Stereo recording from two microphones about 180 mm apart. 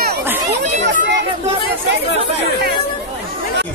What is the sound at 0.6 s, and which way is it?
Chatter, 40° right (ahead or behind).